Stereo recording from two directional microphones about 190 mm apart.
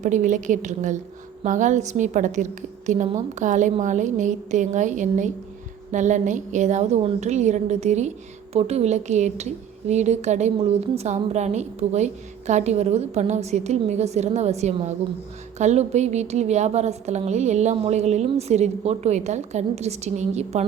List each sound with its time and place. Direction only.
0.0 s a woman's voice: 40° right (ahead or behind)